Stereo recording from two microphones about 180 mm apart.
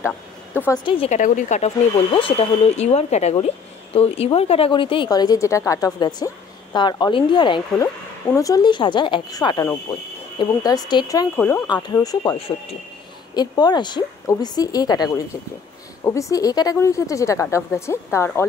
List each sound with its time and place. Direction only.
0.8 s a woman's voice: 30° left (ahead or behind)
1.1 s speech: 45° left (ahead or behind)
2.1 s a woman's voice: 30° left (ahead or behind); by 18.4 s 15° left (ahead or behind)